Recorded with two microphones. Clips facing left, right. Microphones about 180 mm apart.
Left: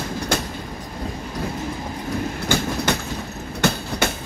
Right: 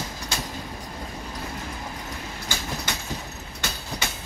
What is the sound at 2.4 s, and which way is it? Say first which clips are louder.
Train: left 10 dB; 60° left (ahead or behind).